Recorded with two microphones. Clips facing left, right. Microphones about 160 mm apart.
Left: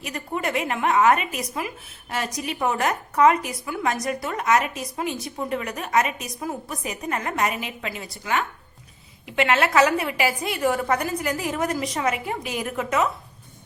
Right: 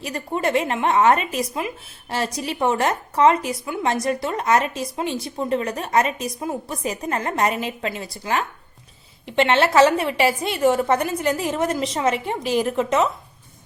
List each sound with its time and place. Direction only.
0.0 s a woman's voice: 30° right (ahead or behind)